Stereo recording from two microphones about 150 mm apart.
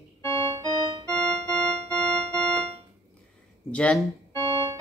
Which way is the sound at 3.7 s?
5° left (ahead or behind).